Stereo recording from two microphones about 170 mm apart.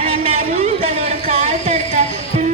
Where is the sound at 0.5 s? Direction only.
40° right (ahead or behind).